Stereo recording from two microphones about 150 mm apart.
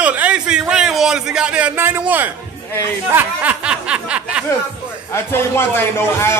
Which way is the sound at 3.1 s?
10° right (ahead or behind).